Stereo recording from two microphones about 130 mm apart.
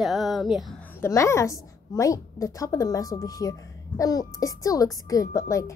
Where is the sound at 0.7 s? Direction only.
15° left (ahead or behind).